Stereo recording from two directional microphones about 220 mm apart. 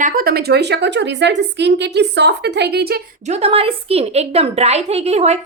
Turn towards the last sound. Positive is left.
turn(degrees=-30)  # may be behind; listen again after turning